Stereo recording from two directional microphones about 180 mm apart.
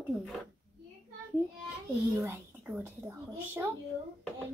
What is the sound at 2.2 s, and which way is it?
Speech, 10° right (ahead or behind).